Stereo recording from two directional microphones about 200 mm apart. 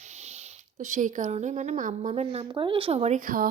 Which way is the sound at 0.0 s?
35° right (ahead or behind).